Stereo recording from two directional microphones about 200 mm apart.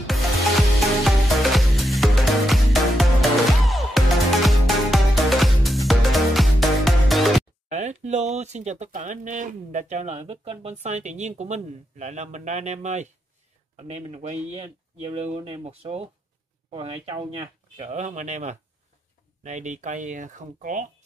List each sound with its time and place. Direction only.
0.0 s music: centre (ahead or behind)
7.7 s speech: 35° right (ahead or behind)